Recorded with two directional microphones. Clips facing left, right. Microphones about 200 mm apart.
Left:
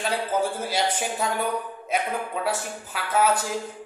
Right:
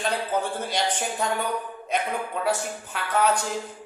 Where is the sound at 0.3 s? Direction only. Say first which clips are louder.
Left 2 dB; 5° left (ahead or behind).